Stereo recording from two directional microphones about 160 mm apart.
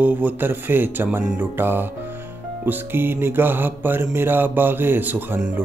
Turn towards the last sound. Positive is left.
turn(degrees=-10)  # may be behind; listen again after turning